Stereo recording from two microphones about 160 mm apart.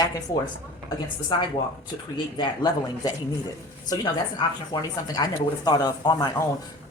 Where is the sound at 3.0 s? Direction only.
25° left (ahead or behind).